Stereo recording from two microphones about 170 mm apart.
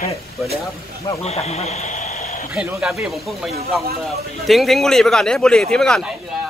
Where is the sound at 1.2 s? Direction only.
40° left (ahead or behind).